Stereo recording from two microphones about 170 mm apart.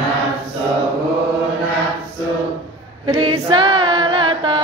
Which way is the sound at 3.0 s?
30° right (ahead or behind).